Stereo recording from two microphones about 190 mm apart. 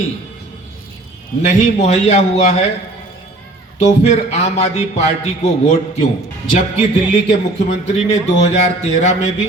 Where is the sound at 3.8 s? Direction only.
35° left (ahead or behind).